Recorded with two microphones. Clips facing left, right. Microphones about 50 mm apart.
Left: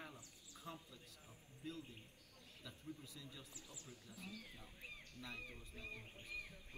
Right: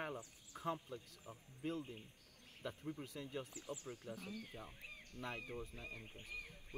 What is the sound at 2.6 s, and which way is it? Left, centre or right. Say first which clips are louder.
Speech: right 8 dB; right.